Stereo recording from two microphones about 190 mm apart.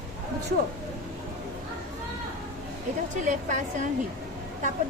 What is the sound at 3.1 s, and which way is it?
Speech, 40° right (ahead or behind).